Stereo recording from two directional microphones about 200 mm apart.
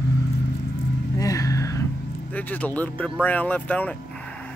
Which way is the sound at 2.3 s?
10° left (ahead or behind).